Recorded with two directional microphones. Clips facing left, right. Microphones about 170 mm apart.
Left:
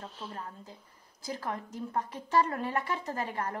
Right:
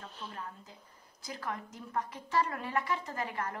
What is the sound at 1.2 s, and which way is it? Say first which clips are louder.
A woman's voice: left 3 dB; 30° left (ahead or behind).